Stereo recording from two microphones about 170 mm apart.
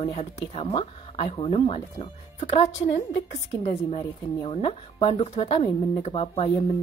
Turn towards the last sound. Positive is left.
turn(degrees=35)  # may be behind; listen again after turning